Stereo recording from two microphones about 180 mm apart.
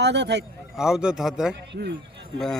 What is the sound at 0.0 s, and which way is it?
Speech, 70° right (ahead or behind).